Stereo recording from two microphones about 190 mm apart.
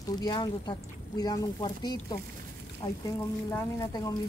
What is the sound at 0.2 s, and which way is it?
Speech, 25° left (ahead or behind).